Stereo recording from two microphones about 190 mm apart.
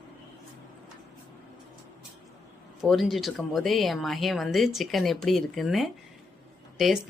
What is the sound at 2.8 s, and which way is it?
Speech, centre (ahead or behind).